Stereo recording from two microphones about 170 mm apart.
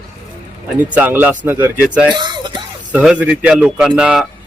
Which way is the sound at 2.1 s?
25° right (ahead or behind).